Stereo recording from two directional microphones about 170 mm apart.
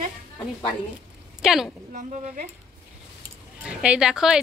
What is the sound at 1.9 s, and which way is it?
Speech, 50° right (ahead or behind).